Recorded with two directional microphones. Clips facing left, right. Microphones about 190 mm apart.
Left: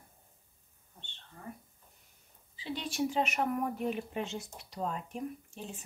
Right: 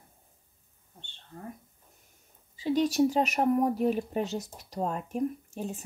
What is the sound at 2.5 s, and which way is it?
Speech, 45° right (ahead or behind).